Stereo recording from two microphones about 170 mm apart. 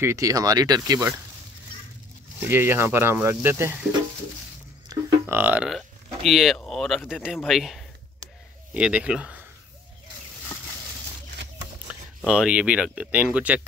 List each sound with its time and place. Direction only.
0.0 s speech: 20° right (ahead or behind)
2.4 s speech: 15° right (ahead or behind)
4.8 s speech: 15° right (ahead or behind)
12.2 s speech: 5° right (ahead or behind)